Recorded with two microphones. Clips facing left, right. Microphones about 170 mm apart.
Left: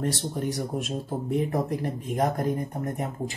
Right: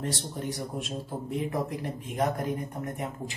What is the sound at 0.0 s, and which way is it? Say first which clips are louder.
Speech: left 5 dB; 45° left (ahead or behind).